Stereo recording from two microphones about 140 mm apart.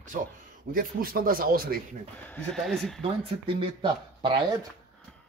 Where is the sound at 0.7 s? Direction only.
90° right.